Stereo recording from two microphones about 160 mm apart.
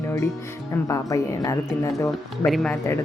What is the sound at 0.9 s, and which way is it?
A woman's voice, 20° left (ahead or behind).